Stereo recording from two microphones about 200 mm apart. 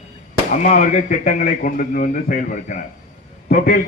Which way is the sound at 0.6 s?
40° left (ahead or behind).